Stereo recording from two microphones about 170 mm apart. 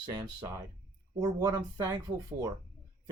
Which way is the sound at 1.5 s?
15° right (ahead or behind).